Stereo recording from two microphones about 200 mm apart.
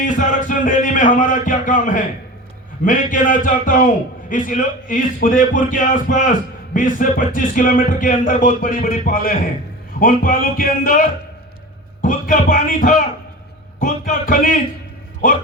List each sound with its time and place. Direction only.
0.0 s music: 40° left (ahead or behind)
2.8 s a man's voice: 40° left (ahead or behind)
4.3 s music: 40° left (ahead or behind)
10.0 s a man's voice: 45° left (ahead or behind)
12.0 s a man's voice: 40° left (ahead or behind)